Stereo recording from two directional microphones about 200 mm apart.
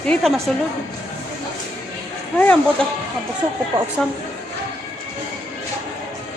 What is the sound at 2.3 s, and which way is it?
Speech, 10° left (ahead or behind).